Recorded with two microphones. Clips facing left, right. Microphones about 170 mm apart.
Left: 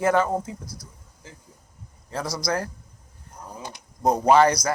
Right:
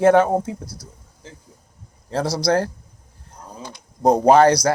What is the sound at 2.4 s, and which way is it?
Speech, 70° right (ahead or behind).